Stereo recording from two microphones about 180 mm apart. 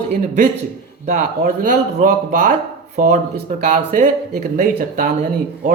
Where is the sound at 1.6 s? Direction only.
50° right (ahead or behind).